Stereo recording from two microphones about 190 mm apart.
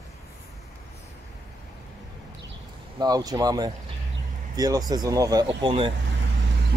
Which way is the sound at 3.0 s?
20° right (ahead or behind).